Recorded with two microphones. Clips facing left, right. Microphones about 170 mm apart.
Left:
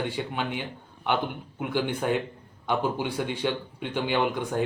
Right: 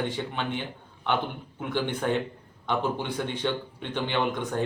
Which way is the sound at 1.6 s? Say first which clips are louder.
Left 1 dB; 10° left (ahead or behind).